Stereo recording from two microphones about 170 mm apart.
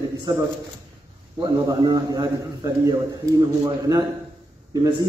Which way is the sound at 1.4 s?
25° right (ahead or behind).